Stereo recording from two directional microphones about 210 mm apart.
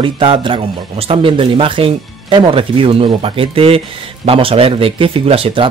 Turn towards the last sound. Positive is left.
turn(degrees=-25)  # may be behind; listen again after turning